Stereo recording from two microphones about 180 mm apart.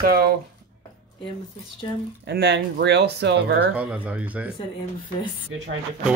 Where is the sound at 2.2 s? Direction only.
70° right (ahead or behind).